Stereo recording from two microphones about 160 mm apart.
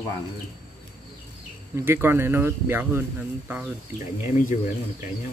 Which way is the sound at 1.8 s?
15° right (ahead or behind).